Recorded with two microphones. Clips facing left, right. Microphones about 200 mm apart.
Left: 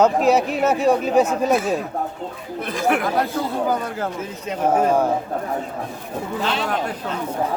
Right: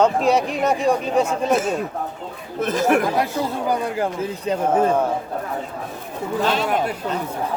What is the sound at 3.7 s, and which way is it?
Speech, 15° right (ahead or behind).